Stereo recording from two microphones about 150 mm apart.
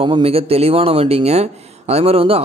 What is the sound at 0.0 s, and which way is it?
A man's voice, 40° right (ahead or behind).